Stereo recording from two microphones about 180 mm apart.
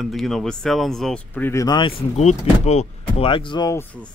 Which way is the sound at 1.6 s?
25° left (ahead or behind).